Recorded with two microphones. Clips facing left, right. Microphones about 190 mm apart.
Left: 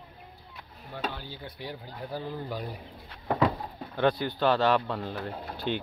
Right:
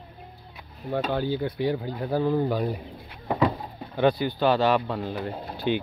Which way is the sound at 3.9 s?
5° right (ahead or behind).